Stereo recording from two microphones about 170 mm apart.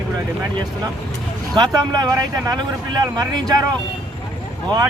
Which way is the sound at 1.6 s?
25° right (ahead or behind).